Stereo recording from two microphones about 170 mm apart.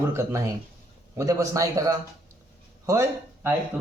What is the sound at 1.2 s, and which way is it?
A man's voice, 20° right (ahead or behind).